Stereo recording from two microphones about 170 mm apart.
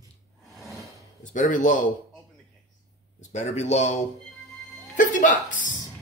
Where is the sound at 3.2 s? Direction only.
40° left (ahead or behind).